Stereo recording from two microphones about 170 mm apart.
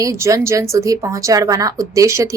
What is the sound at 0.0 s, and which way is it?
A woman's voice, 20° right (ahead or behind).